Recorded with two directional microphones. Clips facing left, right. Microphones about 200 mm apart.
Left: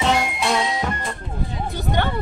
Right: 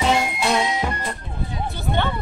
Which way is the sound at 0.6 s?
20° right (ahead or behind).